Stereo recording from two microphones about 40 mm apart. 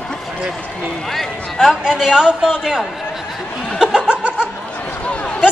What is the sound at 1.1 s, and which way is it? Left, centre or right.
Speech, centre.